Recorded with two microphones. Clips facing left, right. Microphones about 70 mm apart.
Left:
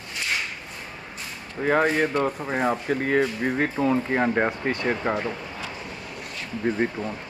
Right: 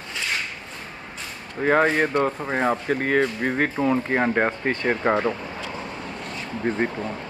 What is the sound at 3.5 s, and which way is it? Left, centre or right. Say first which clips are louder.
Speech: right 1 dB; centre.